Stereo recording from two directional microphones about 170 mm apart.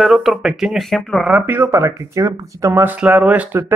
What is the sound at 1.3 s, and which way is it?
Speech, 10° right (ahead or behind).